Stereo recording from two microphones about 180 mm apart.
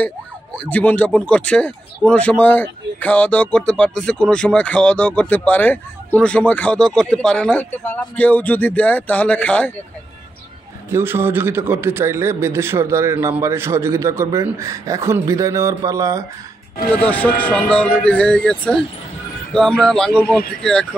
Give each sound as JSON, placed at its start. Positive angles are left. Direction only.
{"t": 0.7, "sound": "speech", "side_deg": 10}
{"t": 10.9, "sound": "a man's voice", "side_deg": -15}
{"t": 16.9, "sound": "speech", "side_deg": 10}